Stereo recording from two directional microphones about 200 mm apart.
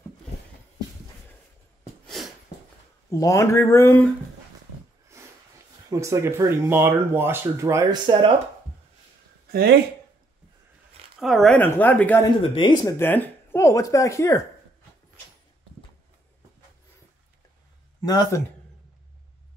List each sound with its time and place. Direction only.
2.0 s a sound: centre (ahead or behind)
3.1 s speech: 15° left (ahead or behind)
5.2 s a sound: 15° right (ahead or behind)
5.9 s speech: 15° right (ahead or behind)
9.5 s speech: 50° right (ahead or behind)
11.1 s speech: centre (ahead or behind)
12.4 s speech: 25° left (ahead or behind)
13.0 s speech: 10° left (ahead or behind)
18.0 s speech: 20° left (ahead or behind)